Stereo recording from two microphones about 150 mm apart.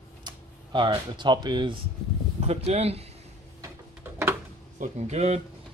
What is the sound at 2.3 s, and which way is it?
Speech, 45° right (ahead or behind).